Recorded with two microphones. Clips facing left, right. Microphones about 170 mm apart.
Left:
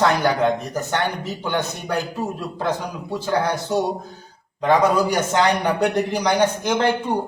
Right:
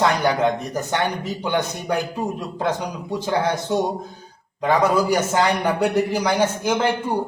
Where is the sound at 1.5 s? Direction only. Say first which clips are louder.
Right 2 dB; 15° right (ahead or behind).